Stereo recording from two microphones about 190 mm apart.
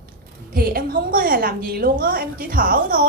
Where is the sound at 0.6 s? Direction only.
50° right (ahead or behind).